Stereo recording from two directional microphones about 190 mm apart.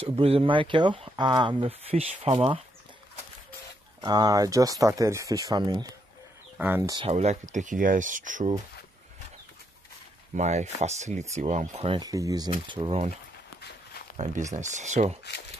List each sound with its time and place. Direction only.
0.0 s speech: 30° right (ahead or behind)
4.0 s speech: 20° right (ahead or behind)
6.9 s speech: 30° right (ahead or behind)
10.3 s speech: 35° right (ahead or behind)
12.0 s speech: 20° right (ahead or behind)
14.1 s speech: 35° right (ahead or behind)